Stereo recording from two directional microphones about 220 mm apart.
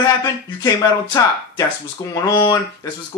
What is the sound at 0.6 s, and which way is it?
Speech, 15° left (ahead or behind).